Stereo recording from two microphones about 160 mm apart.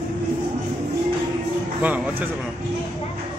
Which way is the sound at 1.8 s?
10° right (ahead or behind).